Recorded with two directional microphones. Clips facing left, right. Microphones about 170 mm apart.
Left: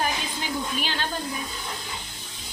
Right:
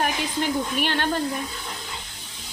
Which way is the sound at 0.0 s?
65° right (ahead or behind).